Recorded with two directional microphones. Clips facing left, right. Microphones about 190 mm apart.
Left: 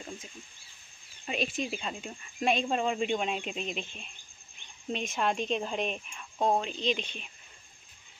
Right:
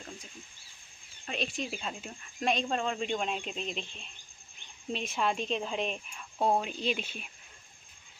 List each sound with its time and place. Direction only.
1.2 s speech: 5° left (ahead or behind)